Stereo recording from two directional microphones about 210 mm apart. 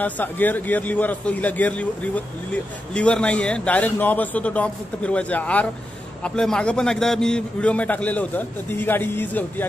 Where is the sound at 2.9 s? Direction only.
5° left (ahead or behind).